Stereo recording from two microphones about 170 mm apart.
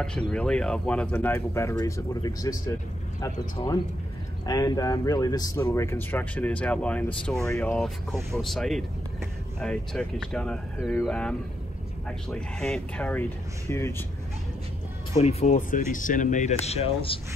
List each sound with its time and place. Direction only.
0.0 s speech: 5° left (ahead or behind)
12.4 s speech: 5° left (ahead or behind)
15.2 s speech: 45° left (ahead or behind)